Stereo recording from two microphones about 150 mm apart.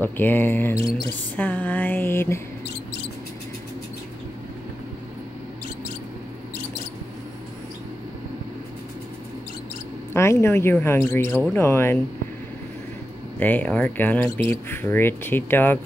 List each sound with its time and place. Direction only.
0.0 s music: 15° left (ahead or behind)
10.1 s music: 15° left (ahead or behind)
13.4 s music: 10° left (ahead or behind)